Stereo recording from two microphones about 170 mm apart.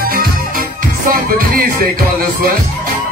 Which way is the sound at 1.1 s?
60° right (ahead or behind).